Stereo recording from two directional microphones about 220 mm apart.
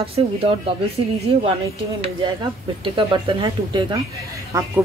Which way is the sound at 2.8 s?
20° right (ahead or behind).